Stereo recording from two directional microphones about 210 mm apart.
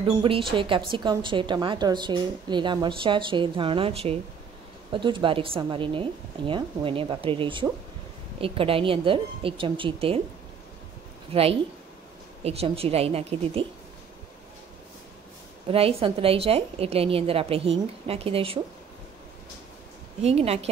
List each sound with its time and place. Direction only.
0.2 s a woman's voice: 25° right (ahead or behind)
11.3 s a woman's voice: 25° right (ahead or behind)
15.6 s a woman's voice: 25° right (ahead or behind)
20.2 s a woman's voice: 30° right (ahead or behind)